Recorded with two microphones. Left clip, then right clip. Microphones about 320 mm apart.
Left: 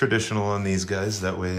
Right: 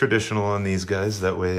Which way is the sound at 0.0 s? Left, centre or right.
Centre.